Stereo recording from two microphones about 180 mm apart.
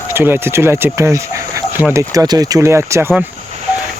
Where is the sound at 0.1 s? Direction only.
15° right (ahead or behind).